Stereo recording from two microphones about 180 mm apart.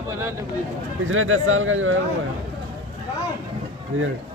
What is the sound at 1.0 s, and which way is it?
Speech, 90° right.